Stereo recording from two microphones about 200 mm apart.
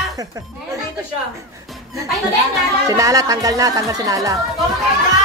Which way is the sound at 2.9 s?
15° right (ahead or behind).